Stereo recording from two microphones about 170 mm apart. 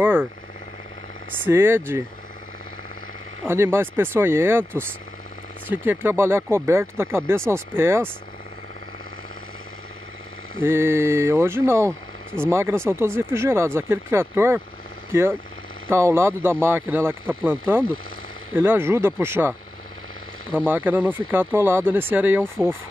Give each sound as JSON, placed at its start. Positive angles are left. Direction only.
{"t": 0.0, "sound": "speech", "side_deg": -10}
{"t": 1.4, "sound": "speech", "side_deg": -15}
{"t": 3.4, "sound": "speech", "side_deg": -15}
{"t": 5.9, "sound": "speech", "side_deg": -15}
{"t": 10.6, "sound": "speech", "side_deg": -15}
{"t": 15.9, "sound": "speech", "side_deg": -15}
{"t": 20.5, "sound": "speech", "side_deg": -10}